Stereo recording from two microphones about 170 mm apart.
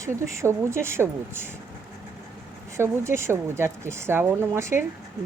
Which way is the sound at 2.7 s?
15° right (ahead or behind).